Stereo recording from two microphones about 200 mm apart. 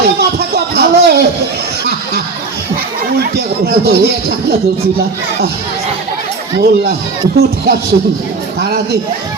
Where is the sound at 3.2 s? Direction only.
50° right (ahead or behind).